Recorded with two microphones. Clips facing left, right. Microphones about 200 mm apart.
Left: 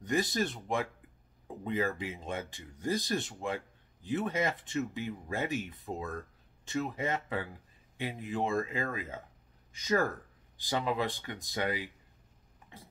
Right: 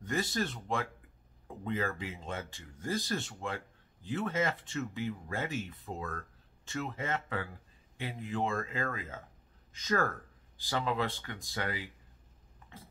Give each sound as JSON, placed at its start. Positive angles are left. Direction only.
{"t": 0.0, "sound": "speech", "side_deg": 15}